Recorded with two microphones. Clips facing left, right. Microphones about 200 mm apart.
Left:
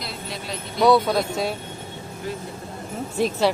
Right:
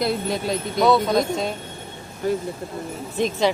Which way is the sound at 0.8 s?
10° left (ahead or behind).